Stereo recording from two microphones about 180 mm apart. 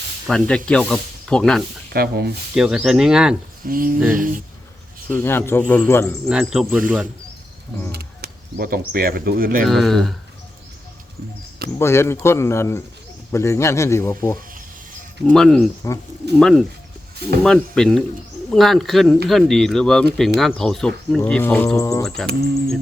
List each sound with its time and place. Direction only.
0.3 s speech: 5° left (ahead or behind)
1.9 s speech: 60° right (ahead or behind)
2.6 s speech: 5° right (ahead or behind)
3.7 s a sound: 50° right (ahead or behind)
5.1 s speech: 10° left (ahead or behind)
6.2 s speech: 5° right (ahead or behind)
7.9 s speech: 60° right (ahead or behind)
9.6 s speech: centre (ahead or behind)
11.8 s speech: 15° left (ahead or behind)
15.3 s speech: 5° left (ahead or behind)
22.0 s speech: centre (ahead or behind)